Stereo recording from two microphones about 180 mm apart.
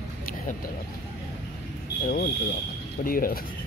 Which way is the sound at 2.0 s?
50° left (ahead or behind).